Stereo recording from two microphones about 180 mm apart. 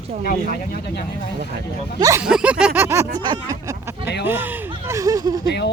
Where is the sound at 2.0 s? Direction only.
15° right (ahead or behind).